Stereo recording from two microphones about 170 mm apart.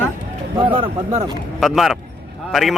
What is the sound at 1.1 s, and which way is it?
Speech, 15° right (ahead or behind).